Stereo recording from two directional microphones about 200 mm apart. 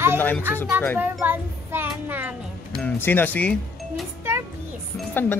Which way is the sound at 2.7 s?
5° left (ahead or behind).